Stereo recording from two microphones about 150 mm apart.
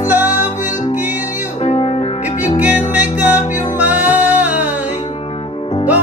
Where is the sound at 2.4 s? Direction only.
55° left (ahead or behind).